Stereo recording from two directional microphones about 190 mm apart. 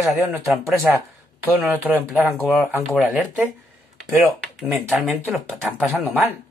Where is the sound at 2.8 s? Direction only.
Centre (ahead or behind).